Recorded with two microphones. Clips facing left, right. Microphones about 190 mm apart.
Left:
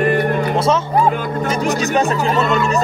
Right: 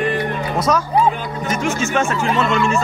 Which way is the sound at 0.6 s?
25° left (ahead or behind).